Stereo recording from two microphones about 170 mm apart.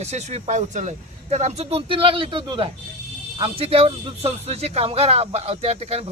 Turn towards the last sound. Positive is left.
turn(degrees=-35)  # may be behind; listen again after turning